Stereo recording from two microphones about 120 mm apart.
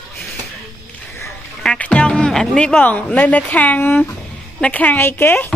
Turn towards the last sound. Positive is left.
turn(degrees=15)  # may be behind; listen again after turning